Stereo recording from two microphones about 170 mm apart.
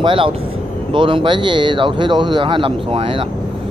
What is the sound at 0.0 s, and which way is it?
Speech, 30° right (ahead or behind).